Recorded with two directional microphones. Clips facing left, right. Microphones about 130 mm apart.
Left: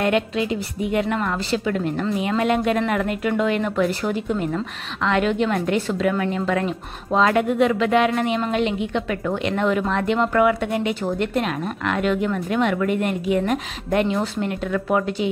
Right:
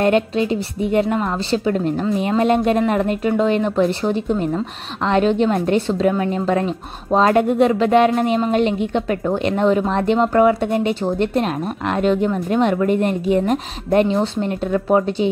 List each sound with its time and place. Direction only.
0.0 s a woman's voice: 35° right (ahead or behind)